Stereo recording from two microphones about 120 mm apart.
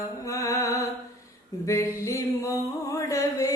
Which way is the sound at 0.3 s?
25° left (ahead or behind).